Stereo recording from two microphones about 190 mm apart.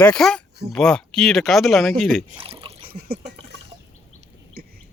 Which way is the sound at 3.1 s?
60° right (ahead or behind).